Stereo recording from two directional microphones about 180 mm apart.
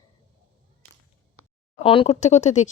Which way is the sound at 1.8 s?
30° left (ahead or behind).